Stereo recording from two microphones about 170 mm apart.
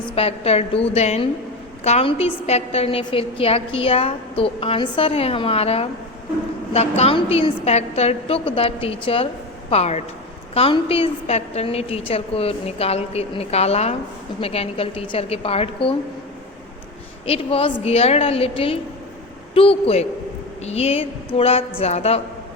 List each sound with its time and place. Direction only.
0.2 s a woman's voice: 35° left (ahead or behind)
17.2 s a woman's voice: 35° left (ahead or behind)